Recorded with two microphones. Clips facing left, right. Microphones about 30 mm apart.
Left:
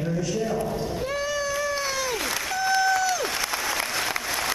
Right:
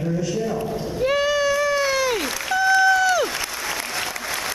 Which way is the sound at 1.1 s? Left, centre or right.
Right.